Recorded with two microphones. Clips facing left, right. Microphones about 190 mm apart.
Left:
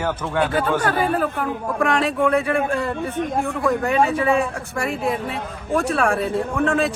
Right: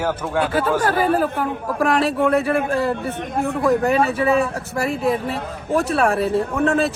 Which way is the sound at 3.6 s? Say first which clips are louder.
Right 2 dB; 35° right (ahead or behind).